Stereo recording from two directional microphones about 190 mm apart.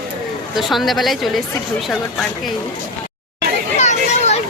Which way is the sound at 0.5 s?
Centre (ahead or behind).